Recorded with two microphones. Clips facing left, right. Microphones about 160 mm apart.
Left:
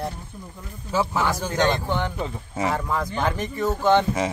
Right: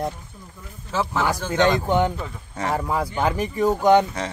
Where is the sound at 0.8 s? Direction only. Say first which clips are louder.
Even; 10° left (ahead or behind).